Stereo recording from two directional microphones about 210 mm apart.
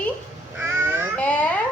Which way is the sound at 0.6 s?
10° right (ahead or behind).